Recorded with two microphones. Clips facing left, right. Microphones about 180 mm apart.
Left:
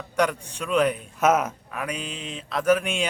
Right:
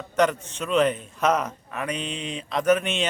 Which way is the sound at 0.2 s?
10° left (ahead or behind).